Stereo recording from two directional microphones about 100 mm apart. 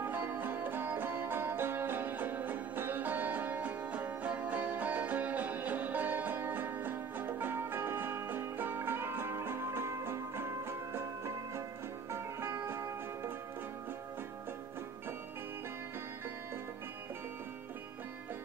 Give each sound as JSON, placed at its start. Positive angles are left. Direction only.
{"t": 0.0, "sound": "music", "side_deg": -20}